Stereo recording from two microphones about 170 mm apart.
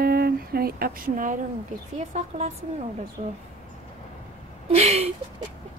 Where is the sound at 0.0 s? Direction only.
65° right (ahead or behind).